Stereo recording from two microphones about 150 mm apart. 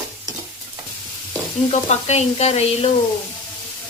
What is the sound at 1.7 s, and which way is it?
Stir, 45° left (ahead or behind).